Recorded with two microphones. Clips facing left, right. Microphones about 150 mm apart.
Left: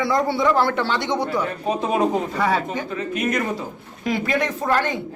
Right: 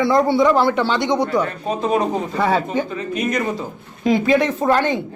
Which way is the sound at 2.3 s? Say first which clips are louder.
Right 3 dB; 30° right (ahead or behind).